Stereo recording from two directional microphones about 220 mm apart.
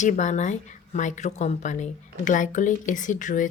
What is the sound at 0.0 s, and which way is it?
Speech, 35° left (ahead or behind).